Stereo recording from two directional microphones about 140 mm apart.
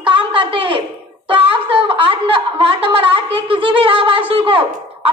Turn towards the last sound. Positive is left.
turn(degrees=-40)  # may be behind; listen again after turning